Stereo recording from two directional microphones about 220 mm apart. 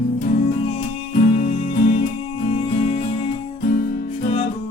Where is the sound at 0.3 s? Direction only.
25° left (ahead or behind).